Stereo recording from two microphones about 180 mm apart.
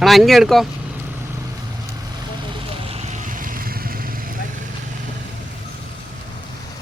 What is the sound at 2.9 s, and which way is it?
Vehicle, 45° right (ahead or behind).